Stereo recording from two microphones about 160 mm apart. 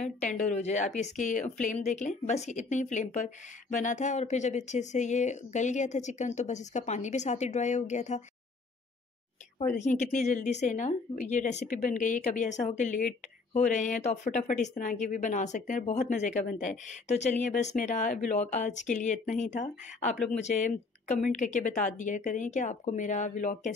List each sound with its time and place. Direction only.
0.5 s speech: 45° left (ahead or behind)
9.8 s speech: 50° left (ahead or behind)